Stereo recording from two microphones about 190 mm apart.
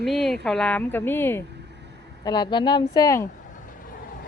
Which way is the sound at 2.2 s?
20° left (ahead or behind).